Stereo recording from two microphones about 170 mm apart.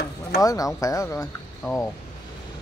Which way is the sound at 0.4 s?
20° left (ahead or behind).